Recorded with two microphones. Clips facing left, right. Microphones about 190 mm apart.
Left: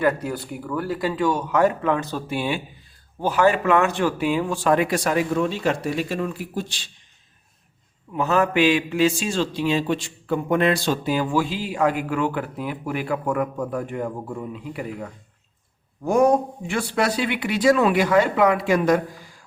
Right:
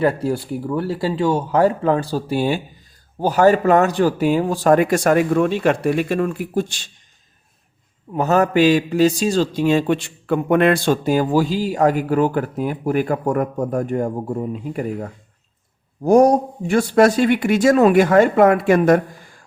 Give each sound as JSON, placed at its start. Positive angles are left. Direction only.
{"t": 0.0, "sound": "a man's voice", "side_deg": -30}
{"t": 8.1, "sound": "a man's voice", "side_deg": -40}